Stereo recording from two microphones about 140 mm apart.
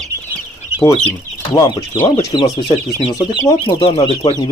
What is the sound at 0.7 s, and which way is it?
Chicken, 10° right (ahead or behind).